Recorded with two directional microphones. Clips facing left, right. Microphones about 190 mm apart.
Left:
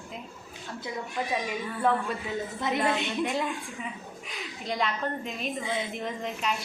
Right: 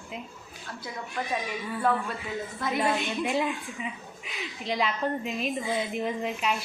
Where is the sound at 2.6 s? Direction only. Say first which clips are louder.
Right 1 dB; 20° left (ahead or behind).